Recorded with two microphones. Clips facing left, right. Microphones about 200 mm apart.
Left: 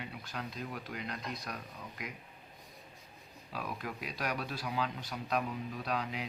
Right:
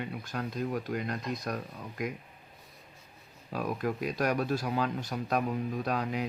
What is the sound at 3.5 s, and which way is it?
Speech, 45° right (ahead or behind).